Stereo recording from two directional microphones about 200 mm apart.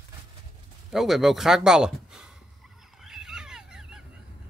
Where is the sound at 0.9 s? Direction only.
Centre (ahead or behind).